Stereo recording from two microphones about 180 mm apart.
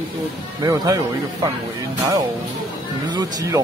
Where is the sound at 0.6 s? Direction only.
20° right (ahead or behind).